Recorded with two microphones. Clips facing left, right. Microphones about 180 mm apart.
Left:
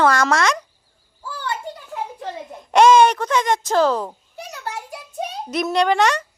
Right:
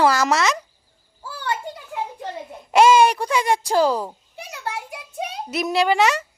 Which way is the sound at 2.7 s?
5° right (ahead or behind).